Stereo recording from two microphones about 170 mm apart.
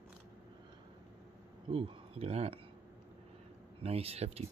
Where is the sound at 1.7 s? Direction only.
35° right (ahead or behind).